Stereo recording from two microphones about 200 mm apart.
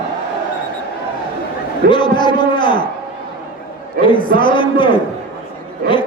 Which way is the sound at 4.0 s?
25° left (ahead or behind).